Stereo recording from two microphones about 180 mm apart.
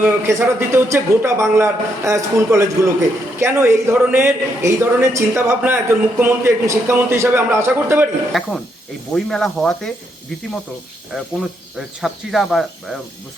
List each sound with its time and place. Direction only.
0.0 s a man's voice: 15° right (ahead or behind)
8.3 s speech: centre (ahead or behind)
11.1 s speech: centre (ahead or behind)